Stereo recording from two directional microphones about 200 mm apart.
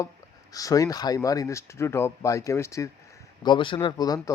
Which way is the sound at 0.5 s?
15° left (ahead or behind).